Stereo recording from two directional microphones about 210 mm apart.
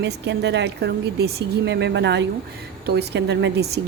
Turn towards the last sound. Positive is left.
turn(degrees=-55)  # may be behind; listen again after turning